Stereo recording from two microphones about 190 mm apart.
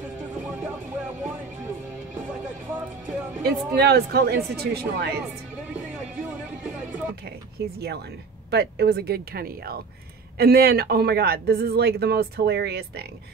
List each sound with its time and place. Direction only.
0.3 s music: 5° right (ahead or behind)
3.7 s speech: 60° right (ahead or behind)
8.5 s speech: 60° right (ahead or behind)